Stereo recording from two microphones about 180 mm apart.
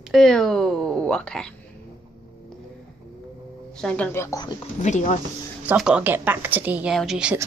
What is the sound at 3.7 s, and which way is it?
Speech, 5° left (ahead or behind).